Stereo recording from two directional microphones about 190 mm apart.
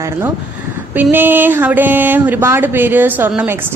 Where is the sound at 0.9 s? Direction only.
10° right (ahead or behind).